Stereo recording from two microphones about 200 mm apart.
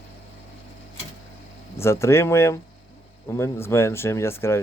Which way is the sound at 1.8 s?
15° left (ahead or behind).